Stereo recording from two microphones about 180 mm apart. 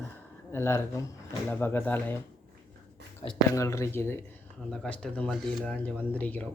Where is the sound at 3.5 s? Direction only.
15° left (ahead or behind).